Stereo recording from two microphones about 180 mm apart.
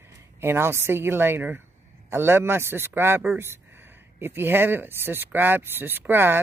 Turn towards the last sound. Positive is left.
turn(degrees=-10)  # may be behind; listen again after turning